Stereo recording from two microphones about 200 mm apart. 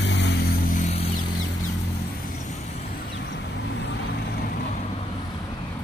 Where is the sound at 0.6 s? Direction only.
40° left (ahead or behind).